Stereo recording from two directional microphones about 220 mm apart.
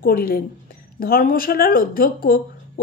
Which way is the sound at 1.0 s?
40° left (ahead or behind).